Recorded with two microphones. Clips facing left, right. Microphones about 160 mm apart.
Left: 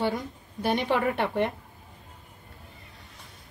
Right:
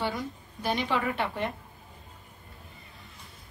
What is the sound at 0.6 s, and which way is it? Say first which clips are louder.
Speech: left 4 dB; 60° left (ahead or behind).